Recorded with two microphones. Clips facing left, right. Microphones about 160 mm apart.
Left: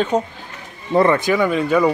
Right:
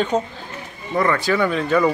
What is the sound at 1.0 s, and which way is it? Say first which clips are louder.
Speech: left 4 dB; 20° left (ahead or behind).